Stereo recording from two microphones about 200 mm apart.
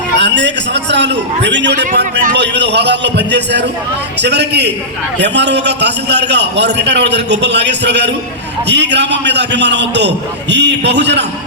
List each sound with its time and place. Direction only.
0.2 s a man's voice: 60° right (ahead or behind)
1.9 s a man's voice: 40° right (ahead or behind)
2.3 s a man's voice: 60° right (ahead or behind)